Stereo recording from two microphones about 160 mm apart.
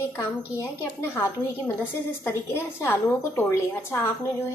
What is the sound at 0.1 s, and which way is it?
Speech, 15° left (ahead or behind).